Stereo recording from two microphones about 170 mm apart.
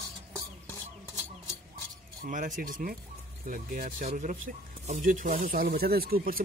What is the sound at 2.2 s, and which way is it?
Speech, 50° right (ahead or behind).